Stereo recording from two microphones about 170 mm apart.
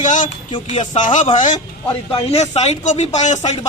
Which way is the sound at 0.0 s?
45° left (ahead or behind).